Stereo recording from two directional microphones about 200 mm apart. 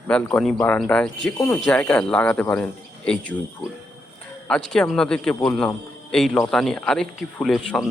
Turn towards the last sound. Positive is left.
turn(degrees=0)  # may be behind; listen again after turning